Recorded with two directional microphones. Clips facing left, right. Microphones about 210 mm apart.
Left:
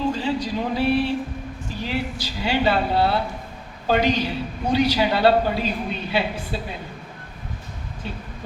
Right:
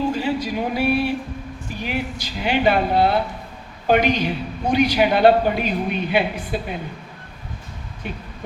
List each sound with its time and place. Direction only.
0.1 s a woman's voice: 10° right (ahead or behind)
8.0 s a woman's voice: 15° right (ahead or behind)